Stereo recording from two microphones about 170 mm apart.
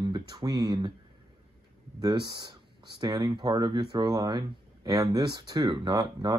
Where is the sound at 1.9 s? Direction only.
25° right (ahead or behind).